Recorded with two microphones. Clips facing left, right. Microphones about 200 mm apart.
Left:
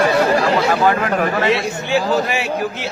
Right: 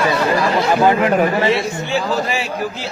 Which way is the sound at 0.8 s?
20° right (ahead or behind).